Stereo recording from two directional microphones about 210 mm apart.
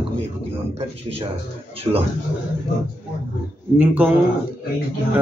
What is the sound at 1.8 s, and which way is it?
Speech, 30° right (ahead or behind).